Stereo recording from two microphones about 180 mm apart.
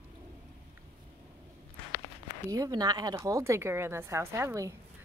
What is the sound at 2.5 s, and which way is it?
Speech, 20° right (ahead or behind).